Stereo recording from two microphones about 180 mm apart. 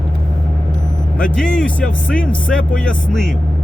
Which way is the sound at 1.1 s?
5° left (ahead or behind).